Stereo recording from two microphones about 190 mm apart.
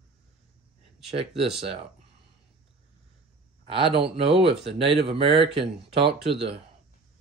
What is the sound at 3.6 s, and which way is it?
Speech, 30° right (ahead or behind).